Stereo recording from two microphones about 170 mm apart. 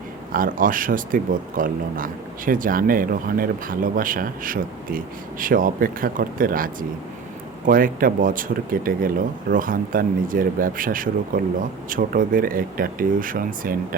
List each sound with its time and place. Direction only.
0.3 s speech: 55° right (ahead or behind)
7.7 s speech: 55° right (ahead or behind)